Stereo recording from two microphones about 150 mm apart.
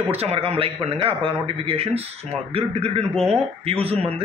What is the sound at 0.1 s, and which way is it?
A man's voice, 40° right (ahead or behind).